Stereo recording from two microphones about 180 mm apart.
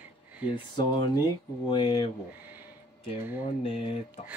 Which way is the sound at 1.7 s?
25° left (ahead or behind).